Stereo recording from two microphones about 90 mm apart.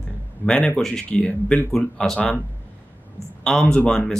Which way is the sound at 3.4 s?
5° left (ahead or behind).